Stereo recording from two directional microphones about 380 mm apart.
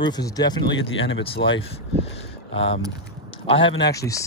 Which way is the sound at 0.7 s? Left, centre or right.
Left.